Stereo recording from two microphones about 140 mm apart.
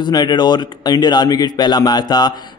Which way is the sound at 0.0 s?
30° left (ahead or behind).